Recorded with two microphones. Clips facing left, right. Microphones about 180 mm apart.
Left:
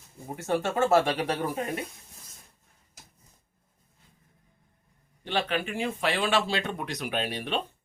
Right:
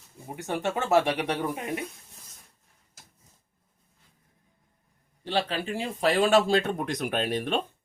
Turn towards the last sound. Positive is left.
turn(degrees=-45)  # may be behind; listen again after turning